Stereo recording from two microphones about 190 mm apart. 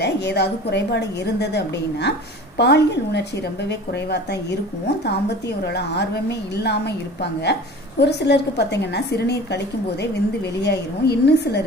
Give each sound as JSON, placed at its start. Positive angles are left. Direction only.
{"t": 0.0, "sound": "a woman's voice", "side_deg": 60}